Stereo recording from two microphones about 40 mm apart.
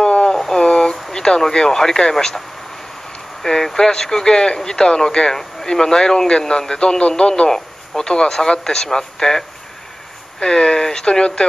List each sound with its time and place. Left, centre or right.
0.0 s a sound: centre
1.1 s speech: centre
3.4 s speech: centre
10.4 s speech: centre